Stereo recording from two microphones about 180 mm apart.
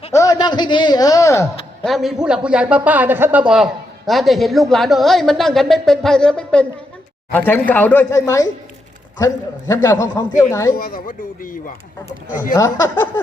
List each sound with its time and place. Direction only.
0.1 s speech: 20° left (ahead or behind)
1.8 s a man's voice: centre (ahead or behind); by 10.8 s 15° left (ahead or behind)
10.8 s speech: 55° left (ahead or behind)
12.5 s a man's voice: 15° left (ahead or behind)